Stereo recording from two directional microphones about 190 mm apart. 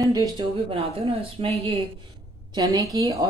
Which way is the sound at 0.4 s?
30° right (ahead or behind).